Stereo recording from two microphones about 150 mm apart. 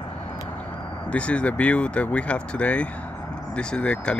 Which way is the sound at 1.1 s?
10° left (ahead or behind).